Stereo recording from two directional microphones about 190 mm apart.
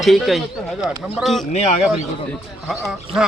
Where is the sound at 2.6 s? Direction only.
Centre (ahead or behind).